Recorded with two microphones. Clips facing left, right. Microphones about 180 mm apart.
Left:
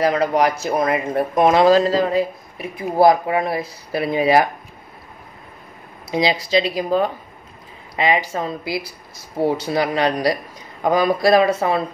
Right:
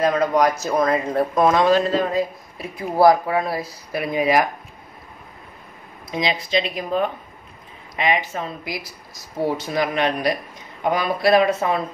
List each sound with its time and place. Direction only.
0.0 s speech: 30° left (ahead or behind)
0.7 s speech: 20° left (ahead or behind)
1.6 s speech: 35° left (ahead or behind)
2.5 s speech: 20° left (ahead or behind)
6.5 s speech: 35° left (ahead or behind)